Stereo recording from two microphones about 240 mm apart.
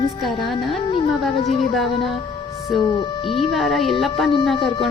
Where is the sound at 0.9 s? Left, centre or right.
Left.